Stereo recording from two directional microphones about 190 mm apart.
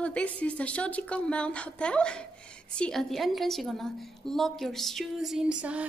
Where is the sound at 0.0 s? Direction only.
5° left (ahead or behind).